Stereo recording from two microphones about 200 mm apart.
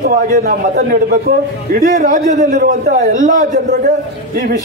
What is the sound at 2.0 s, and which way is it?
A man's voice, 35° right (ahead or behind).